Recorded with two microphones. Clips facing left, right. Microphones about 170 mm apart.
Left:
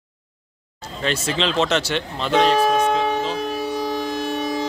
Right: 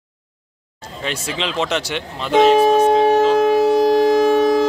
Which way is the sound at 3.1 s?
80° right.